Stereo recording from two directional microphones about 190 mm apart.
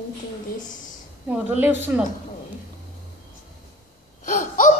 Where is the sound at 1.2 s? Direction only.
10° right (ahead or behind).